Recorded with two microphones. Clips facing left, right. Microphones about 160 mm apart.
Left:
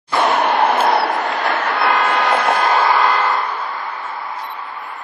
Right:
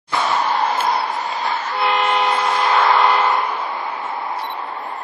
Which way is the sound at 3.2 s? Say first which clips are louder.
Right 1 dB; 20° right (ahead or behind).